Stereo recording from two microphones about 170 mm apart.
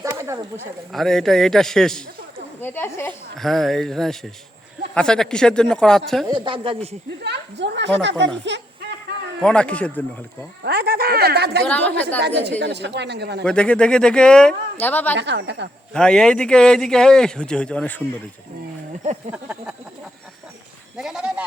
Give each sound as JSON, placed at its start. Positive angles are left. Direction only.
{"t": 0.0, "sound": "a sound", "side_deg": -15}
{"t": 0.9, "sound": "a man's voice", "side_deg": 0}
{"t": 6.3, "sound": "speech", "side_deg": -30}
{"t": 7.3, "sound": "a woman's voice", "side_deg": -90}
{"t": 9.4, "sound": "a man's voice", "side_deg": 5}
{"t": 10.6, "sound": "speech", "side_deg": -70}
{"t": 11.6, "sound": "a man's voice", "side_deg": 10}
{"t": 12.2, "sound": "a woman's voice", "side_deg": -80}
{"t": 13.4, "sound": "a man's voice", "side_deg": 5}
{"t": 15.2, "sound": "a woman's voice", "side_deg": -90}
{"t": 15.9, "sound": "a man's voice", "side_deg": 5}
{"t": 19.3, "sound": "a sound", "side_deg": -5}
{"t": 21.0, "sound": "a sound", "side_deg": -5}